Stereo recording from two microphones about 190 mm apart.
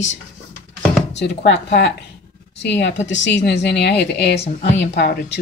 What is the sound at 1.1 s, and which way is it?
A woman's voice, 65° left (ahead or behind).